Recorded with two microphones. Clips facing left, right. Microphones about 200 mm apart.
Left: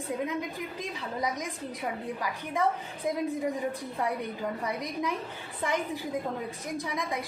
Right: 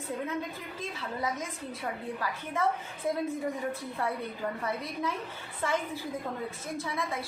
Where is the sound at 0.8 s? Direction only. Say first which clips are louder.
Even; 15° left (ahead or behind).